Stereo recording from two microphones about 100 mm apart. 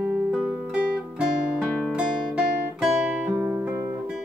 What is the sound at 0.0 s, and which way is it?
Music, 20° right (ahead or behind).